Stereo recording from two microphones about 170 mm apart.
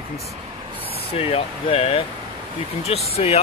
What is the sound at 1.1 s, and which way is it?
Speech, 35° left (ahead or behind).